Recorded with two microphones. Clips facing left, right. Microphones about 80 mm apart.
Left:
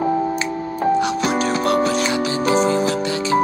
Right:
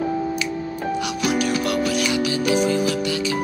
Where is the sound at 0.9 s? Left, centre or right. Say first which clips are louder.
Left 4 dB; left.